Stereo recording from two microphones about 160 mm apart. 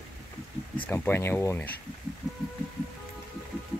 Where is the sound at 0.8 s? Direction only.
10° left (ahead or behind).